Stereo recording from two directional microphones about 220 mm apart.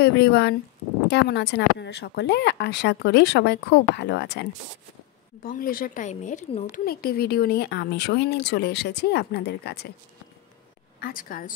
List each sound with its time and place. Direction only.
0.0 s a woman's voice: 45° left (ahead or behind)
5.4 s a woman's voice: 40° left (ahead or behind)
11.0 s speech: 40° left (ahead or behind)